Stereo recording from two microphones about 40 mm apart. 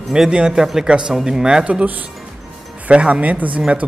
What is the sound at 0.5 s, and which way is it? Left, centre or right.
Speech, centre.